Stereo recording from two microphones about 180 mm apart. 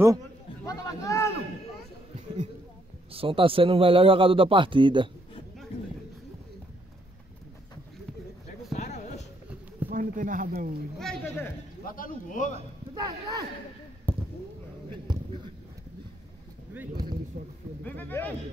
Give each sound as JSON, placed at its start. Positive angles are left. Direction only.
{"t": 0.7, "sound": "speech", "side_deg": 20}
{"t": 2.1, "sound": "a sound", "side_deg": -40}
{"t": 3.1, "sound": "a man's voice", "side_deg": -30}
{"t": 8.7, "sound": "a sound", "side_deg": 40}
{"t": 9.8, "sound": "speech", "side_deg": -50}
{"t": 11.0, "sound": "speech", "side_deg": 5}
{"t": 11.8, "sound": "a man's voice", "side_deg": 50}
{"t": 12.9, "sound": "a man's voice", "side_deg": -20}
{"t": 14.1, "sound": "basketball bounce", "side_deg": 10}
{"t": 15.0, "sound": "a sound", "side_deg": -25}
{"t": 17.8, "sound": "speech", "side_deg": 10}